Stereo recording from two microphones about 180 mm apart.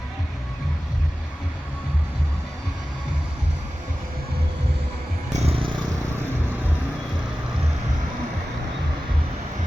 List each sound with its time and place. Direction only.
5.3 s vehicle: 35° right (ahead or behind)